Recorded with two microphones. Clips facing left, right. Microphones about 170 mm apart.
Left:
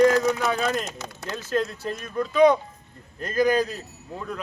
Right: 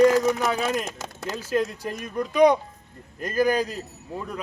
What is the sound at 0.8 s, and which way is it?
Speech, 45° right (ahead or behind).